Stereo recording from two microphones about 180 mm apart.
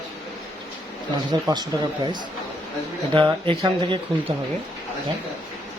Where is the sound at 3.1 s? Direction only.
30° right (ahead or behind).